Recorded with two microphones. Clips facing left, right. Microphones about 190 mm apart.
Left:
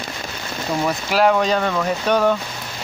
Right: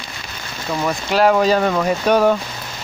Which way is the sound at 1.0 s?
Centre (ahead or behind).